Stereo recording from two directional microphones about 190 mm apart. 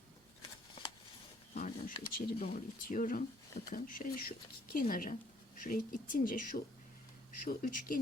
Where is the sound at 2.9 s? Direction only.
45° left (ahead or behind).